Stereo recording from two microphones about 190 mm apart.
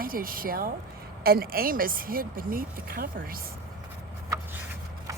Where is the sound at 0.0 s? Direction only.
50° right (ahead or behind).